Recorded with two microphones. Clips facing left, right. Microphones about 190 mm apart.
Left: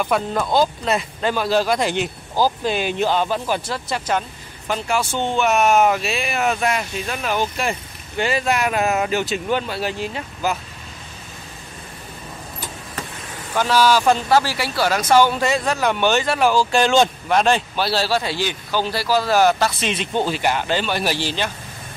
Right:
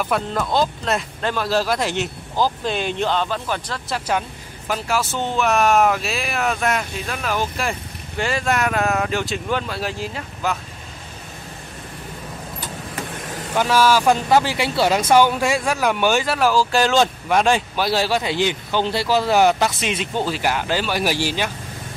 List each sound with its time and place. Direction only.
0.0 s speech: 5° left (ahead or behind)
13.6 s speech: 10° right (ahead or behind)